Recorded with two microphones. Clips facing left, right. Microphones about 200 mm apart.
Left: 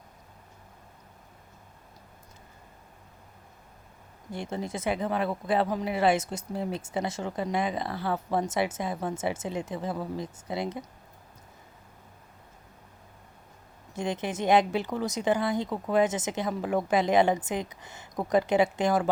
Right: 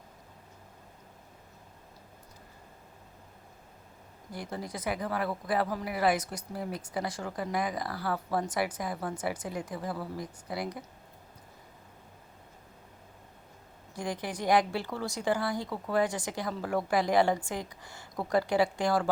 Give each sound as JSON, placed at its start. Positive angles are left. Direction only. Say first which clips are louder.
{"t": 4.3, "sound": "speech", "louder": "left 5 dB", "side_deg": 25}
{"t": 13.9, "sound": "speech", "louder": "left 4 dB", "side_deg": 25}